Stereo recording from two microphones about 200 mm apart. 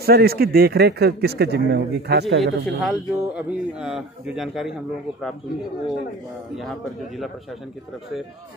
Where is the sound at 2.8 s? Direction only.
5° right (ahead or behind).